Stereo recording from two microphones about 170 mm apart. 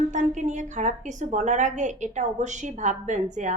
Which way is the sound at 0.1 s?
45° right (ahead or behind).